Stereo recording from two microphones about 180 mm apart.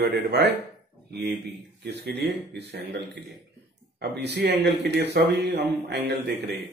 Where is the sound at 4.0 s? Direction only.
65° right (ahead or behind).